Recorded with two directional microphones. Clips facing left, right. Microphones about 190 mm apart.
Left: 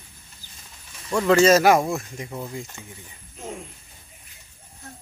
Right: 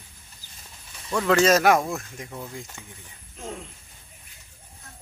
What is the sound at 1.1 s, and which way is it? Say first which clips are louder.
Speech: left 3 dB; 5° left (ahead or behind).